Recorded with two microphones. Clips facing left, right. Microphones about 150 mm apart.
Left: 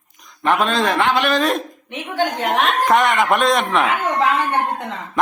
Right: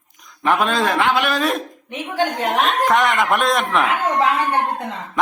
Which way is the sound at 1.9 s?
40° right (ahead or behind).